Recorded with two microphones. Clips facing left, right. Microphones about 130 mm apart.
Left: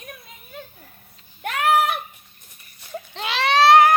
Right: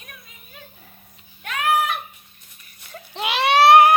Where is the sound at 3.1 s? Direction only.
15° right (ahead or behind).